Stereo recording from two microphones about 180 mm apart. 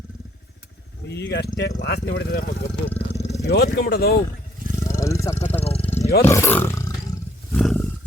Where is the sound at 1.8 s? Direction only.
65° left (ahead or behind).